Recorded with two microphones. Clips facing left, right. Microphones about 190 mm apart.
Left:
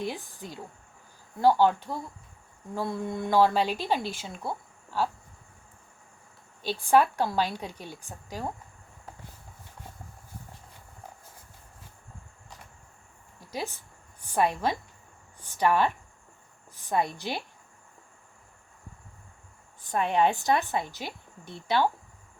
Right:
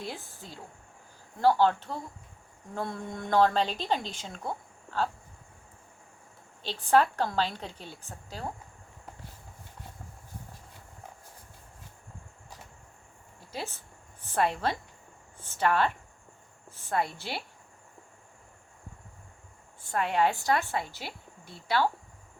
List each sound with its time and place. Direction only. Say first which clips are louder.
0.0 s a woman's voice: left 5 dB; 15° left (ahead or behind)
6.6 s a woman's voice: left 2 dB; 10° left (ahead or behind)
13.5 s a woman's voice: left 3 dB; 15° left (ahead or behind)
19.8 s speech: left 2 dB; 20° left (ahead or behind)